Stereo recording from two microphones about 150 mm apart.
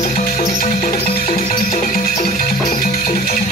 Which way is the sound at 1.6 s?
60° left (ahead or behind).